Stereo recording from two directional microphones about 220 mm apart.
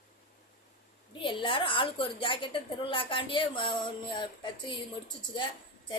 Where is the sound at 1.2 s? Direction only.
20° left (ahead or behind).